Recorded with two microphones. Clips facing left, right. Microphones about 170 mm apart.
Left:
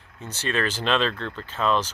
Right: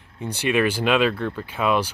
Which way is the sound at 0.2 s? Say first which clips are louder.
Right 6 dB; 15° right (ahead or behind).